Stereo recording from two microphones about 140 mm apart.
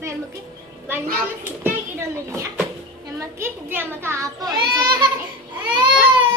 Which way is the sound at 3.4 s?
15° right (ahead or behind).